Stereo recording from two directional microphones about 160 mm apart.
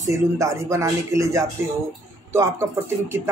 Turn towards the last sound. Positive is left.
turn(degrees=-15)  # may be behind; listen again after turning